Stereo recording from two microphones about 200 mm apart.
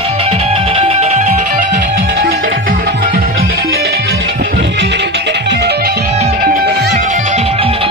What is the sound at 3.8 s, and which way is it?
Music, 55° right (ahead or behind).